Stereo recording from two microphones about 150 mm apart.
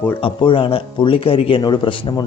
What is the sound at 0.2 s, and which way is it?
Speech, 35° left (ahead or behind).